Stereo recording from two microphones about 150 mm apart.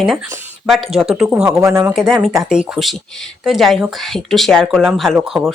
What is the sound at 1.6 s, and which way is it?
Speech, 20° right (ahead or behind).